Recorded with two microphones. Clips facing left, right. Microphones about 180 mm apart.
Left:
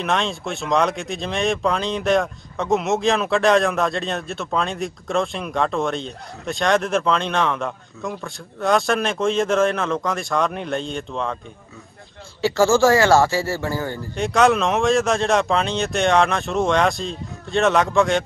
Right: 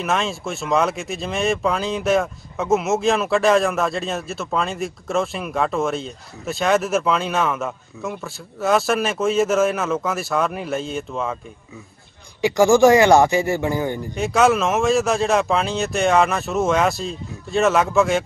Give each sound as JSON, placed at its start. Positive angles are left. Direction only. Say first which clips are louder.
{"t": 0.0, "sound": "speech", "louder": "even", "side_deg": 0}
{"t": 12.4, "sound": "speech", "louder": "right 2 dB", "side_deg": -15}
{"t": 14.1, "sound": "speech", "louder": "even", "side_deg": 0}